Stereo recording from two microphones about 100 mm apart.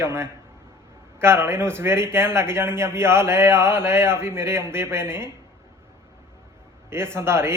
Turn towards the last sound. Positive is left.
turn(degrees=-25)  # may be behind; listen again after turning